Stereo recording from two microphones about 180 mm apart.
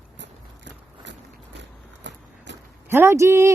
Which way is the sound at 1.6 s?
80° right.